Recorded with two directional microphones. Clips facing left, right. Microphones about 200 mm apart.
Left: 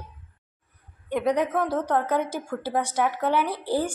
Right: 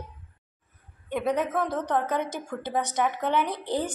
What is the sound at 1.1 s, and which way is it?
A woman's voice, 10° left (ahead or behind).